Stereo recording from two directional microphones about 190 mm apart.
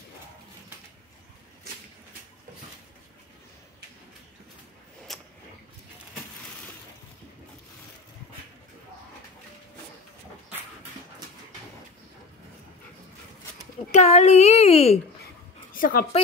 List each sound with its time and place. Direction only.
5.1 s a sound: centre (ahead or behind)
13.9 s a woman's voice: 35° left (ahead or behind)
15.7 s a woman's voice: 50° left (ahead or behind)